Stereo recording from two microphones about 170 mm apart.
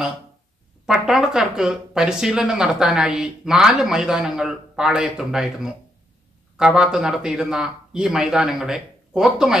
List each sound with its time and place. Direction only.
0.8 s speech: 5° right (ahead or behind)